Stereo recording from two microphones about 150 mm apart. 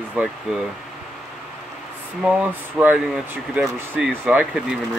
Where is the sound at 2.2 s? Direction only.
10° right (ahead or behind).